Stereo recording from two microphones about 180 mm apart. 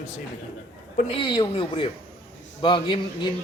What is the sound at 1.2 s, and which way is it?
A man's voice, 30° left (ahead or behind).